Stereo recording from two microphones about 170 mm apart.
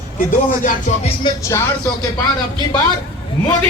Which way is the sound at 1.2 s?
25° left (ahead or behind).